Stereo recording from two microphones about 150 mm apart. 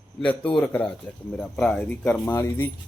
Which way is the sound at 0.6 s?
15° left (ahead or behind).